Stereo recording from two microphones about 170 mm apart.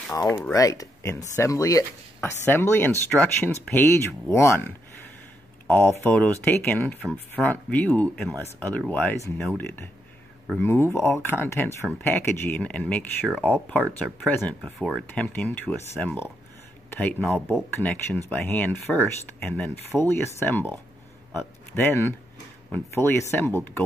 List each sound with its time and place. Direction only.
0.1 s a man's voice: 15° left (ahead or behind)